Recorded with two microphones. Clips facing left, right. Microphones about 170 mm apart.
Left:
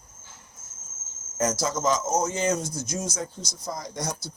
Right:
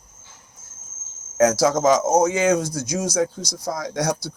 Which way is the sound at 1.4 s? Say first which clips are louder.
Right 9 dB; 85° right.